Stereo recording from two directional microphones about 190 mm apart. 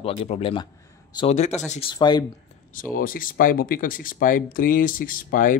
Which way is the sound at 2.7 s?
45° left (ahead or behind).